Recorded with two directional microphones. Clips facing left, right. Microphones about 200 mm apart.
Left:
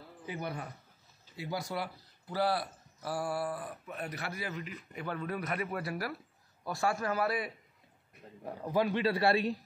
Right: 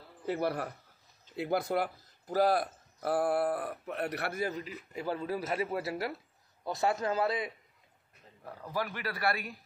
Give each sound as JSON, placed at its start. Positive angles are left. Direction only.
{"t": 0.3, "sound": "speech", "side_deg": -70}
{"t": 1.3, "sound": "a man's voice", "side_deg": -60}
{"t": 8.5, "sound": "a man's voice", "side_deg": 20}